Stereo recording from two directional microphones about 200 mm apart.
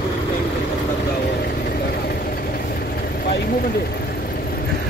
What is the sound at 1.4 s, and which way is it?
Vehicle, 50° left (ahead or behind).